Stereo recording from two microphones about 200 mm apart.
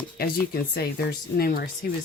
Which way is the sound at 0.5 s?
50° left (ahead or behind).